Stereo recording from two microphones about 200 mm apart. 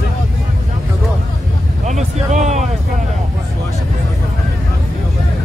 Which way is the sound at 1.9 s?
35° right (ahead or behind).